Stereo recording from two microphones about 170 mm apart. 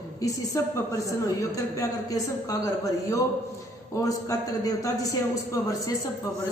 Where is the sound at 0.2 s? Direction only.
20° left (ahead or behind).